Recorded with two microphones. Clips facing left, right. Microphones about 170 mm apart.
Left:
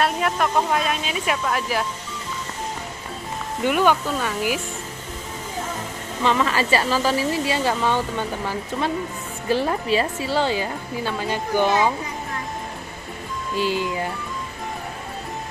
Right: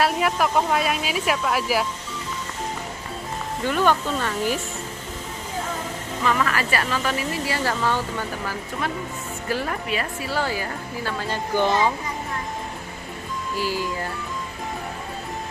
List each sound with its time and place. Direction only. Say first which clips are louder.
0.0 s speech: even; 5° right (ahead or behind)
3.6 s speech: left 2 dB; 10° left (ahead or behind)
6.2 s speech: left 2 dB; 25° left (ahead or behind)
13.6 s speech: left 4 dB; 20° left (ahead or behind)